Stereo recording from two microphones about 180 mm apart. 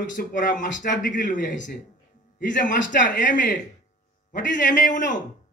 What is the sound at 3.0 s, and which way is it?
A man's voice, 45° left (ahead or behind).